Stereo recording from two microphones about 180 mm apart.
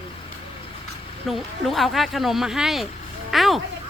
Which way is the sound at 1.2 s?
Centre (ahead or behind).